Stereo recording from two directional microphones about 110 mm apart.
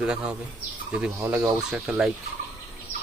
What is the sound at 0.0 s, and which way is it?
Speech, 10° right (ahead or behind).